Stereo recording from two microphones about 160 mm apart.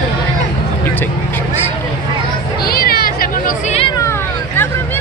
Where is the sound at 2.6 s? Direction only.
70° left (ahead or behind).